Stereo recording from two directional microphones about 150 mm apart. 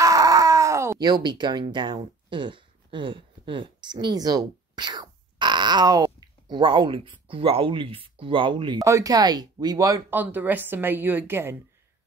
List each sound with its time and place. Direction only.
0.0 s a sound: 25° right (ahead or behind)
2.2 s speech: 35° right (ahead or behind)
8.8 s speech: 20° right (ahead or behind)